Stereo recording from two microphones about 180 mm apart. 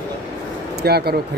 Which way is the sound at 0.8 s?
60° right (ahead or behind).